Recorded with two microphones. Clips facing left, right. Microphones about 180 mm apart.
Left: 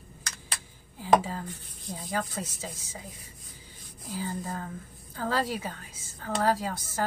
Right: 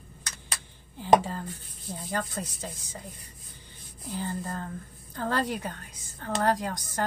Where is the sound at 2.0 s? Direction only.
5° left (ahead or behind).